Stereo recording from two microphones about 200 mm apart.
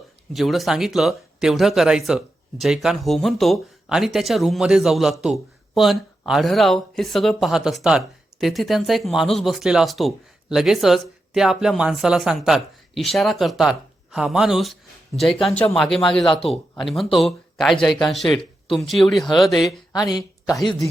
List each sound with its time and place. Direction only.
0.3 s speech: centre (ahead or behind)
16.2 s a man's voice: 25° left (ahead or behind)
16.8 s speech: centre (ahead or behind)
19.9 s speech: 20° left (ahead or behind)